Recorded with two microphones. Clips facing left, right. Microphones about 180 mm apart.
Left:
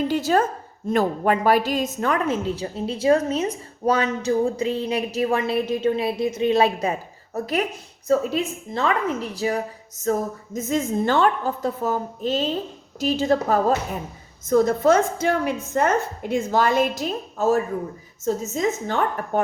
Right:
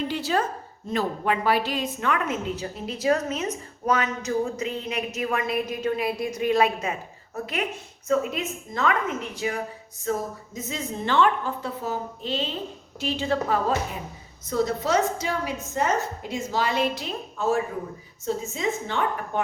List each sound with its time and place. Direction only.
0.1 s a woman's voice: 45° left (ahead or behind)